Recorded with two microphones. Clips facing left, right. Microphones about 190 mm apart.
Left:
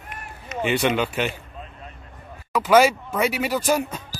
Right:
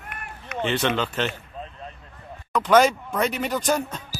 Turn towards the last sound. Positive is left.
turn(degrees=10)  # may be behind; listen again after turning